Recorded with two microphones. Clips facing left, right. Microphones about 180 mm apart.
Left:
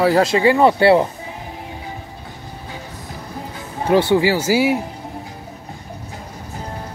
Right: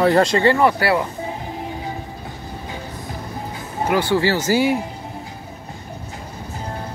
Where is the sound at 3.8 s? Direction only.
25° left (ahead or behind).